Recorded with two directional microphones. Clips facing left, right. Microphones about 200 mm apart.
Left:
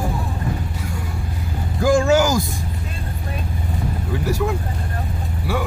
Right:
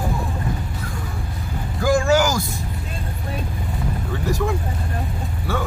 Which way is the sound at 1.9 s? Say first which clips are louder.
Left 2 dB; 20° left (ahead or behind).